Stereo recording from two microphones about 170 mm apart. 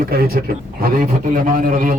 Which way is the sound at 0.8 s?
50° right (ahead or behind).